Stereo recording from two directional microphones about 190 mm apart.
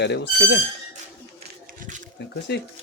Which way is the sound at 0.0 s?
60° left (ahead or behind).